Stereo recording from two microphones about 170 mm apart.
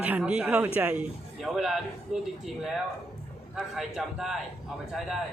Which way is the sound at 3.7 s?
Centre (ahead or behind).